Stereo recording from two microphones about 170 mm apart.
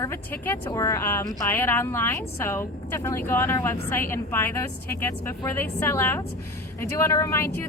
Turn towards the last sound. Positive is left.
turn(degrees=20)  # may be behind; listen again after turning